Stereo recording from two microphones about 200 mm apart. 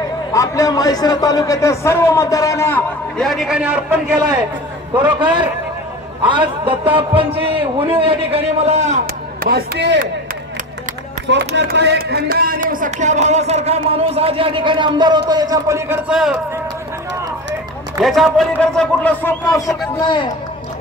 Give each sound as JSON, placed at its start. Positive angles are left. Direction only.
{"t": 0.3, "sound": "a man's voice", "side_deg": 15}
{"t": 3.2, "sound": "a man's voice", "side_deg": 0}
{"t": 4.9, "sound": "a man's voice", "side_deg": -20}
{"t": 9.5, "sound": "speech", "side_deg": -60}
{"t": 11.2, "sound": "speech", "side_deg": -60}
{"t": 16.1, "sound": "a man's voice", "side_deg": -5}
{"t": 18.0, "sound": "a man's voice", "side_deg": 0}